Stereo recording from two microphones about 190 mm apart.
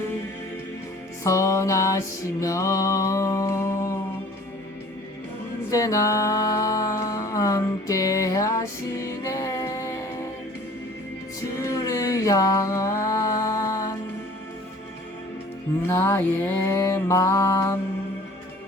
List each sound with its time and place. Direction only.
1.2 s music: 15° left (ahead or behind)
5.7 s music: 15° left (ahead or behind)
11.5 s mantra: 15° left (ahead or behind)
15.9 s music: 15° left (ahead or behind)